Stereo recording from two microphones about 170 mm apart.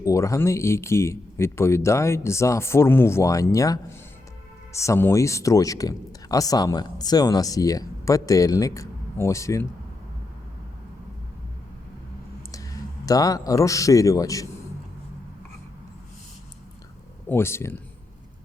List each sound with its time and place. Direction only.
0.0 s speech: 20° left (ahead or behind)
13.1 s speech: 20° left (ahead or behind)
17.2 s speech: 15° left (ahead or behind)